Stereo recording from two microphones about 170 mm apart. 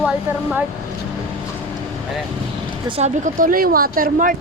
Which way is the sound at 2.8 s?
35° right (ahead or behind).